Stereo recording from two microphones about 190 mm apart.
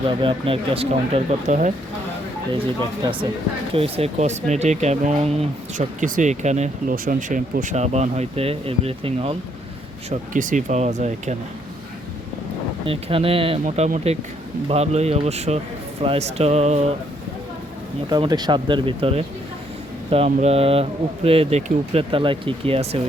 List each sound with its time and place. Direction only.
0.2 s speech: 25° right (ahead or behind)
3.0 s speech: 25° right (ahead or behind)
10.1 s speech: 40° right (ahead or behind)
12.8 s speech: 30° right (ahead or behind)
18.1 s speech: 20° right (ahead or behind)